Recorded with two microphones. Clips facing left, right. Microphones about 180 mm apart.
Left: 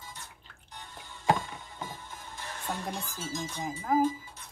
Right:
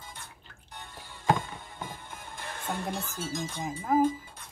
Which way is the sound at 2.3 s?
55° right (ahead or behind).